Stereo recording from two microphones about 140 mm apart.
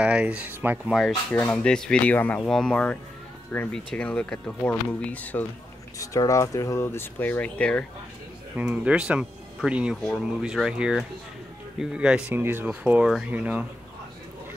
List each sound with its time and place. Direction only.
0.0 s speech: 10° right (ahead or behind)
1.3 s speech: 10° left (ahead or behind)
5.9 s speech: 25° left (ahead or behind)
8.5 s speech: 10° right (ahead or behind)